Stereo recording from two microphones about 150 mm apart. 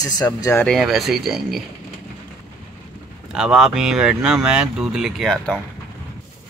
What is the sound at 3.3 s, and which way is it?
Speech, 5° right (ahead or behind).